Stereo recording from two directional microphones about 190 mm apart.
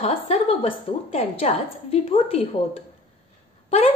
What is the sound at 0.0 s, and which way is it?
A woman's voice, 30° left (ahead or behind).